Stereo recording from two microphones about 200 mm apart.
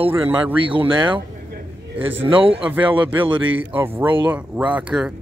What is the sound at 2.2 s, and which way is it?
A man's voice, 25° right (ahead or behind).